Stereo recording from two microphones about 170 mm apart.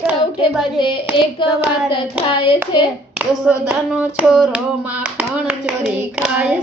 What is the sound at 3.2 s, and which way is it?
Clapping, 10° right (ahead or behind).